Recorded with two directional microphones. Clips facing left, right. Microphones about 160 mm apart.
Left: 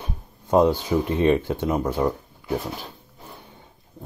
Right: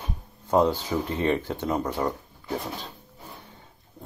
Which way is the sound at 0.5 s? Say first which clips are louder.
Left 4 dB; 10° left (ahead or behind).